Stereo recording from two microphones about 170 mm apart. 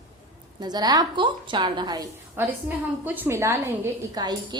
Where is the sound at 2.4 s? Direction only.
10° right (ahead or behind).